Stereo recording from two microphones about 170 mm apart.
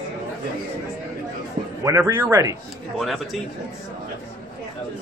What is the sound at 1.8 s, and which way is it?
Speech, 15° right (ahead or behind).